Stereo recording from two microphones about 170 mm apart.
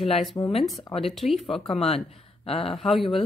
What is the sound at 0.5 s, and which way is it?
A woman's voice, centre (ahead or behind).